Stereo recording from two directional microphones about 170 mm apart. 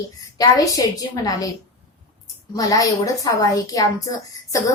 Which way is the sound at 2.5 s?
20° left (ahead or behind).